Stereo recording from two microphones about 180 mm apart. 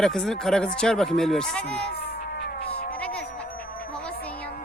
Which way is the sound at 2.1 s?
60° left (ahead or behind).